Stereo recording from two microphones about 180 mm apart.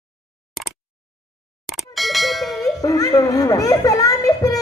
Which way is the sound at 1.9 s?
Centre (ahead or behind).